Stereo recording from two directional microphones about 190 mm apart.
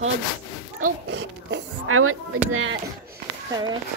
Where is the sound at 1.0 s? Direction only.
75° right (ahead or behind).